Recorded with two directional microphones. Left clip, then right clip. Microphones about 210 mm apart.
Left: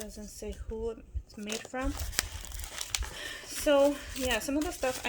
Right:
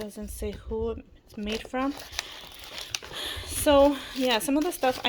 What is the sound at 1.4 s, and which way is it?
Speech, 5° right (ahead or behind).